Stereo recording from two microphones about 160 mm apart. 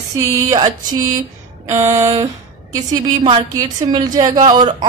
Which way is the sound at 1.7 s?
20° right (ahead or behind).